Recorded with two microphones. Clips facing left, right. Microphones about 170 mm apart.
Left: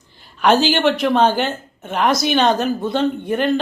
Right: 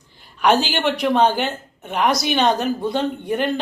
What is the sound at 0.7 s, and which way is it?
A woman's voice, 15° right (ahead or behind).